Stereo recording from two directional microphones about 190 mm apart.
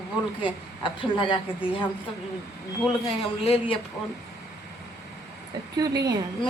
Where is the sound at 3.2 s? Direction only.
30° left (ahead or behind).